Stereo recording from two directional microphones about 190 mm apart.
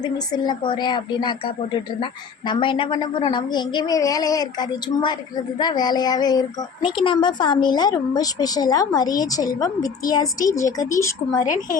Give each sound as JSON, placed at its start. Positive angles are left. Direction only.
{"t": 0.0, "sound": "a woman's voice", "side_deg": 20}
{"t": 11.4, "sound": "a woman's voice", "side_deg": 40}